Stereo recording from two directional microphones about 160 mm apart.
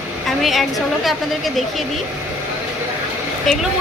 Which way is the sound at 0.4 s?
Centre (ahead or behind).